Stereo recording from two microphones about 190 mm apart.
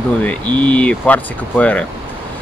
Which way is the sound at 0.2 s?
5° left (ahead or behind).